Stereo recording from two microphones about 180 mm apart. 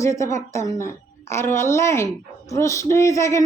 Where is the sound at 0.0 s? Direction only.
15° left (ahead or behind).